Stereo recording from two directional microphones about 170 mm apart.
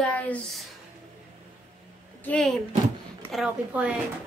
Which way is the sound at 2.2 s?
5° left (ahead or behind).